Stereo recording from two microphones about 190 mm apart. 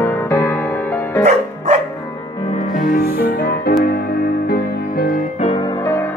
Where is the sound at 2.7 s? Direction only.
50° left (ahead or behind).